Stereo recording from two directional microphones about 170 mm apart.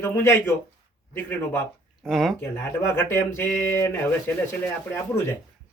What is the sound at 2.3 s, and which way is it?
Speech, 15° left (ahead or behind).